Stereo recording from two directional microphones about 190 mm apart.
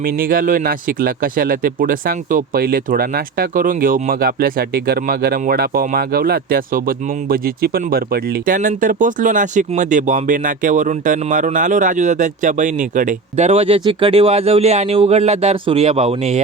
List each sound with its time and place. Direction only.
0.0 s speech: 50° right (ahead or behind); by 16.4 s 35° right (ahead or behind)